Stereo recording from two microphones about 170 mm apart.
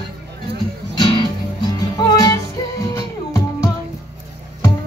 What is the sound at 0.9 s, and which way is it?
Music, 25° left (ahead or behind).